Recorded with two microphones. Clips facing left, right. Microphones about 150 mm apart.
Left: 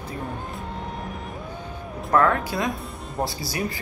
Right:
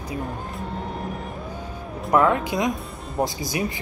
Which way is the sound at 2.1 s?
15° right (ahead or behind).